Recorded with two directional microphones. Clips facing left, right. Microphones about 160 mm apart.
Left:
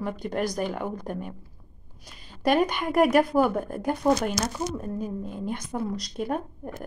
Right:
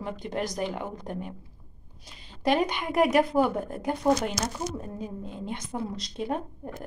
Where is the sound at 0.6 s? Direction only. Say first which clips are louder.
Left 2 dB; 50° left (ahead or behind).